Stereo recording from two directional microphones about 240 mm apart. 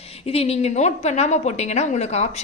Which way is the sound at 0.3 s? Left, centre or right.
Left.